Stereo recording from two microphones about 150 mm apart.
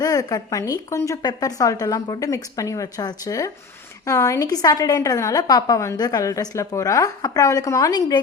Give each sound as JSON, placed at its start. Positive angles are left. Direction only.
{"t": 0.0, "sound": "a woman's voice", "side_deg": 25}